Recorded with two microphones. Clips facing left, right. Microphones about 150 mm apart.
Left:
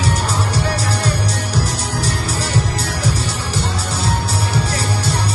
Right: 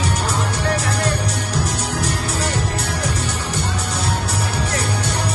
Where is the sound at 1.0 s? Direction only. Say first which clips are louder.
Left 1 dB; 10° left (ahead or behind).